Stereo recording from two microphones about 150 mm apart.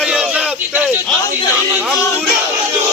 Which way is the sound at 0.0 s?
5° right (ahead or behind).